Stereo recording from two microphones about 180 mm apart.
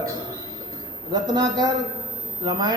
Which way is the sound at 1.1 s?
25° right (ahead or behind).